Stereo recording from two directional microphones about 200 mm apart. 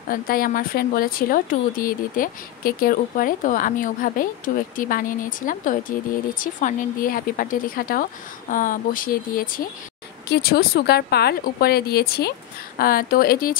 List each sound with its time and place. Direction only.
0.1 s a woman's voice: 45° left (ahead or behind)